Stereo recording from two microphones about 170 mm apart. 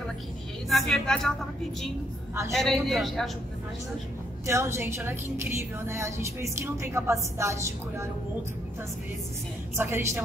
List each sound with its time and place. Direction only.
0.7 s a man's voice: centre (ahead or behind)
2.5 s a man's voice: centre (ahead or behind)
4.5 s a woman's voice: 15° right (ahead or behind)
9.8 s a woman's voice: 15° right (ahead or behind)